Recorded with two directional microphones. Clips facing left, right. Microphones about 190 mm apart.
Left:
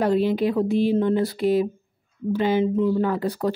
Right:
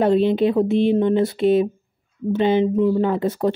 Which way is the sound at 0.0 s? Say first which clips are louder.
Right 4 dB; 25° right (ahead or behind).